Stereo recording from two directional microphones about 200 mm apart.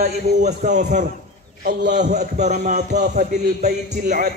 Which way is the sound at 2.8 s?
55° right (ahead or behind).